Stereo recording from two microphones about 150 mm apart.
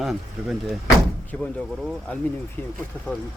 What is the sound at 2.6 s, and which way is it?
Speech, 15° left (ahead or behind).